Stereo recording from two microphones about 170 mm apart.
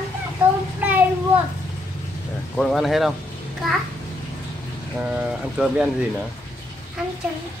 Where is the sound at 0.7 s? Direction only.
10° right (ahead or behind).